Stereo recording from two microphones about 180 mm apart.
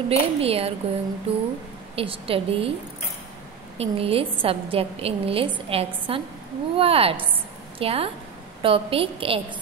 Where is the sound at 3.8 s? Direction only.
30° right (ahead or behind).